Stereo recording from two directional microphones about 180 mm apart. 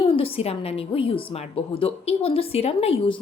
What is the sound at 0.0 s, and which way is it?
A woman's voice, 30° left (ahead or behind).